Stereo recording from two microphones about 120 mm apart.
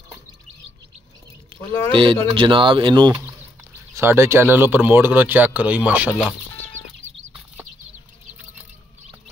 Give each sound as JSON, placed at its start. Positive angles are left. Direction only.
{"t": 1.5, "sound": "a sound", "side_deg": -45}
{"t": 1.9, "sound": "speech", "side_deg": -45}
{"t": 3.9, "sound": "speech", "side_deg": -20}